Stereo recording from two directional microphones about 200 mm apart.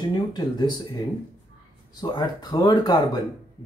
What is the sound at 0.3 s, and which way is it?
Speech, 20° left (ahead or behind).